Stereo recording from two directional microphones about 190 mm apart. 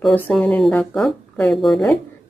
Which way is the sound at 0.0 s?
Centre (ahead or behind).